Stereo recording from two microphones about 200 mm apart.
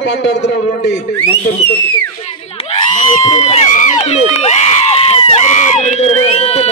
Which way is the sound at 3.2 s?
35° left (ahead or behind).